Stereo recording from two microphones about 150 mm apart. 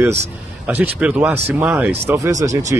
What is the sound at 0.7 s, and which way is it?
Speech, 10° right (ahead or behind).